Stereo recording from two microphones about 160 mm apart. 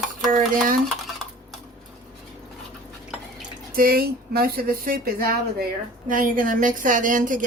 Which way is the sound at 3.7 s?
65° right (ahead or behind).